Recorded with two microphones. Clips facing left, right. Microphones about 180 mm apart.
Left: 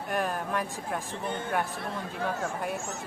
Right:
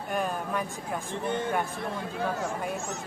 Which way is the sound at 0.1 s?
Centre (ahead or behind).